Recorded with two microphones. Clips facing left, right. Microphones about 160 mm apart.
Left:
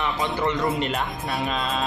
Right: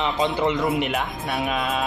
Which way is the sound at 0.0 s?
20° right (ahead or behind).